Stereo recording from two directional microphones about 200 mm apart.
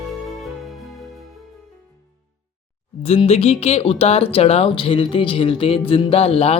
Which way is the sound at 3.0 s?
30° left (ahead or behind).